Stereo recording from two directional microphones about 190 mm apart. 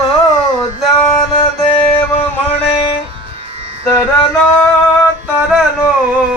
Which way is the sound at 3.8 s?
15° left (ahead or behind).